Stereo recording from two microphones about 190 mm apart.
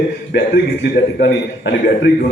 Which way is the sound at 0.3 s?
65° left (ahead or behind).